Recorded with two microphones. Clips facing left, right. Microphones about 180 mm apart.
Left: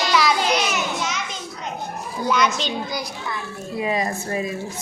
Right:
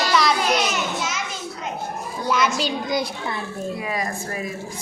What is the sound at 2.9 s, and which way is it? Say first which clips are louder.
Speech: right 5 dB; 30° right (ahead or behind).